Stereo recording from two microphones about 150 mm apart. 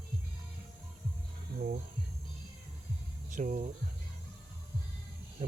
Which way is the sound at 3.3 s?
55° right (ahead or behind).